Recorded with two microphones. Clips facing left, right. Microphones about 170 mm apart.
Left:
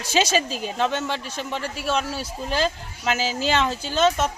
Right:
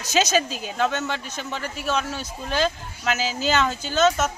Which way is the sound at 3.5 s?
30° left (ahead or behind).